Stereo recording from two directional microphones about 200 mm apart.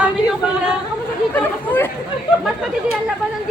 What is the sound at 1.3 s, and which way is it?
Speech, 10° left (ahead or behind).